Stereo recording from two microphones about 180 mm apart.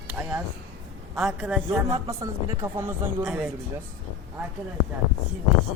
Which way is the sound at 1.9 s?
20° right (ahead or behind).